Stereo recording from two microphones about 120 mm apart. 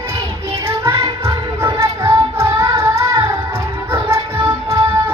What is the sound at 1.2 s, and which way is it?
Music, 25° right (ahead or behind).